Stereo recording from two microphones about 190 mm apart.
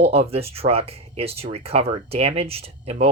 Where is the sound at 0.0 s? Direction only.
30° right (ahead or behind).